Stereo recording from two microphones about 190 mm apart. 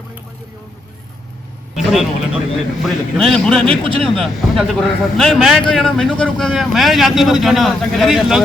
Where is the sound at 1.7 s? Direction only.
Centre (ahead or behind).